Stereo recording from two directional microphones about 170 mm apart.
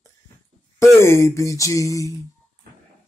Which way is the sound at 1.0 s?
15° left (ahead or behind).